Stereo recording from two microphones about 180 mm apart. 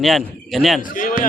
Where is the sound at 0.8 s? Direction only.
50° left (ahead or behind).